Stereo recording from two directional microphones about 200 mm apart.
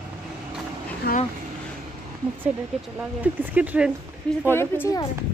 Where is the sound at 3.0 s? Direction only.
10° right (ahead or behind).